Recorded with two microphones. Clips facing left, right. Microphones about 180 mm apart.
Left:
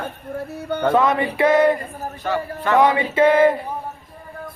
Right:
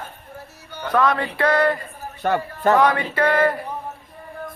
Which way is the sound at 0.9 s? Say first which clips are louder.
Right 1 dB; 20° left (ahead or behind).